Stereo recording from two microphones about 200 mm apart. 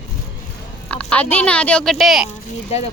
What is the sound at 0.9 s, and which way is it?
A woman's voice, 5° left (ahead or behind).